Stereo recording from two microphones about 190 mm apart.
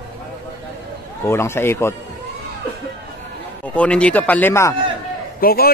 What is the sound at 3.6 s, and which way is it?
Speech, 5° left (ahead or behind).